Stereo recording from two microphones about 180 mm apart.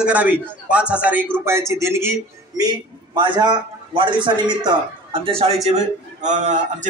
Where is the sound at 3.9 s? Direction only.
25° right (ahead or behind).